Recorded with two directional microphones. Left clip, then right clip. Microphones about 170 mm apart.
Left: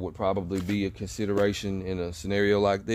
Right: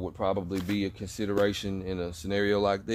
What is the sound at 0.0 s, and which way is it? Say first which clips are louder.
Speech: left 1 dB; 40° left (ahead or behind).